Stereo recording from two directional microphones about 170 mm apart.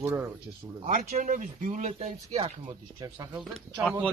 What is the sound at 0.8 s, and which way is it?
Speech, 45° right (ahead or behind).